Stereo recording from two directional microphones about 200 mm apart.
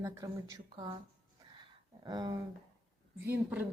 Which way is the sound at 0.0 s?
15° right (ahead or behind).